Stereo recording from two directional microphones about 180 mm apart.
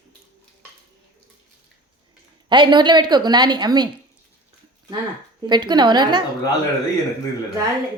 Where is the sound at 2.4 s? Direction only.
25° right (ahead or behind).